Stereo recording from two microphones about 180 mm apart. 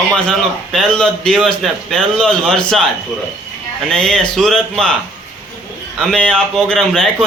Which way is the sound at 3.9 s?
5° left (ahead or behind).